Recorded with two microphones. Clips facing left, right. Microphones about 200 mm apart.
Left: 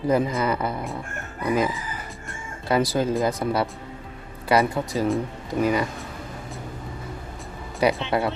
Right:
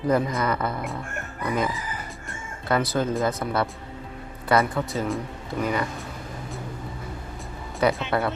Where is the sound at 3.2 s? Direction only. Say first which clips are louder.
Left 2 dB; 15° left (ahead or behind).